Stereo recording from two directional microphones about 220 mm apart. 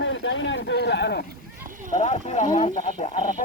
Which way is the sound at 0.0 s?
55° left (ahead or behind).